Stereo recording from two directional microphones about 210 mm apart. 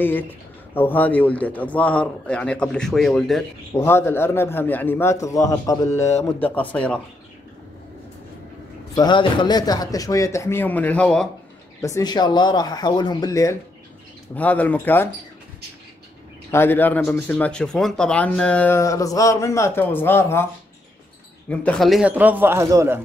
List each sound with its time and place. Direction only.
0.7 s speech: 10° left (ahead or behind)
8.9 s speech: 20° left (ahead or behind); by 11.2 s 5° left (ahead or behind)
11.8 s speech: 15° left (ahead or behind)
16.4 s speech: 10° left (ahead or behind)
21.5 s a man's voice: 5° left (ahead or behind); by 22.9 s 15° right (ahead or behind)